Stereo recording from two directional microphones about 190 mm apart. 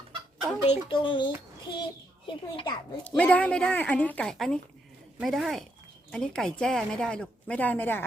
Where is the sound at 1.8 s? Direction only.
25° left (ahead or behind).